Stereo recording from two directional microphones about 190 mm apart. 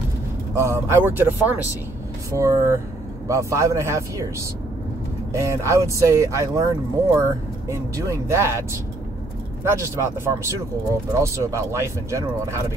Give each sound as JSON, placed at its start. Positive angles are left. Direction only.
{"t": 0.6, "sound": "speech", "side_deg": -15}
{"t": 5.3, "sound": "speech", "side_deg": -15}